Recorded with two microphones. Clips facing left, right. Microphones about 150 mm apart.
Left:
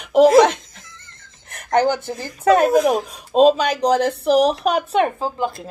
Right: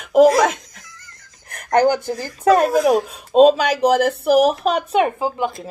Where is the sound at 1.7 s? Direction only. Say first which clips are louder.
Right 2 dB; 10° right (ahead or behind).